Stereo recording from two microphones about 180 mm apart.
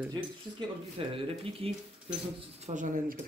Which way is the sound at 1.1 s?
30° right (ahead or behind).